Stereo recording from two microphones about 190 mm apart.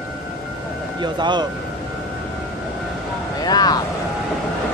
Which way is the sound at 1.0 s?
25° right (ahead or behind).